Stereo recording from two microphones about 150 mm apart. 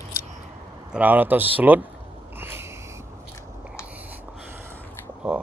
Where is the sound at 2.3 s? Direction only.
15° right (ahead or behind).